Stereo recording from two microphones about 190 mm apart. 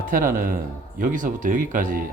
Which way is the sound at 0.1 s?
45° right (ahead or behind).